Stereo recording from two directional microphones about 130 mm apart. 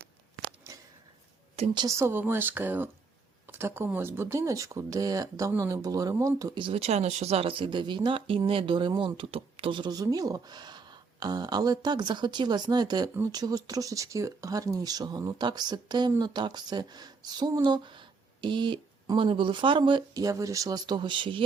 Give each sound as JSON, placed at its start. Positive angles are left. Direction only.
{"t": 1.7, "sound": "speech", "side_deg": -35}
{"t": 2.0, "sound": "speech", "side_deg": -20}
{"t": 20.1, "sound": "speech", "side_deg": -25}